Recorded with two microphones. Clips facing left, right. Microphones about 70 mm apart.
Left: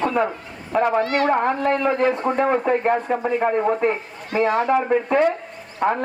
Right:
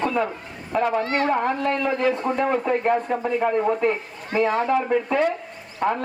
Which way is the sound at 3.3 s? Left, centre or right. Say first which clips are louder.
Left 2 dB; left.